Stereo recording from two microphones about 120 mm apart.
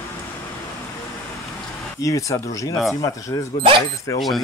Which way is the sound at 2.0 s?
25° left (ahead or behind).